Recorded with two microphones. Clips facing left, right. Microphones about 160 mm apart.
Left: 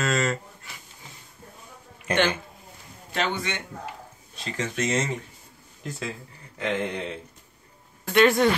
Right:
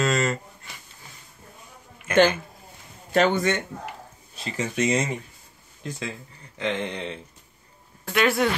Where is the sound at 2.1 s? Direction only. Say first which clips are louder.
Right 5 dB; 35° left (ahead or behind).